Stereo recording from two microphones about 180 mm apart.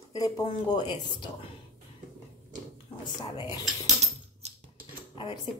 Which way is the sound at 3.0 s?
25° left (ahead or behind).